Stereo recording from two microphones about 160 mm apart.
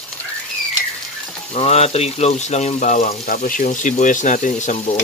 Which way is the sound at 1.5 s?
40° left (ahead or behind).